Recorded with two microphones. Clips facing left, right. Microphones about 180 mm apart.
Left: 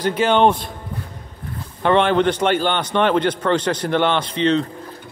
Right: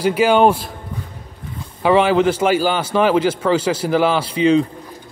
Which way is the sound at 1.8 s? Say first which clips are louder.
Right 2 dB; 5° right (ahead or behind).